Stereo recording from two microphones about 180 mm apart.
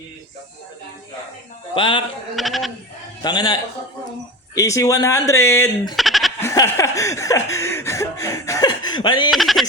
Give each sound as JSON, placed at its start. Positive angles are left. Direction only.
{"t": 1.7, "sound": "a man's voice", "side_deg": 30}
{"t": 2.3, "sound": "speech", "side_deg": 0}
{"t": 3.2, "sound": "a man's voice", "side_deg": 20}
{"t": 6.0, "sound": "goat", "side_deg": 0}
{"t": 6.4, "sound": "chuckle", "side_deg": 15}
{"t": 9.3, "sound": "speech", "side_deg": 0}